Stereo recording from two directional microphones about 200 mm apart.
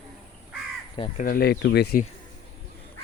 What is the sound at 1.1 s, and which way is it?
Speech, 45° left (ahead or behind).